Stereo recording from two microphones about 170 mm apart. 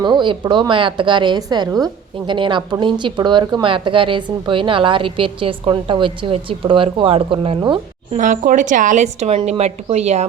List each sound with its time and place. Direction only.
0.0 s a woman's voice: 25° right (ahead or behind)
8.1 s a woman's voice: 50° right (ahead or behind)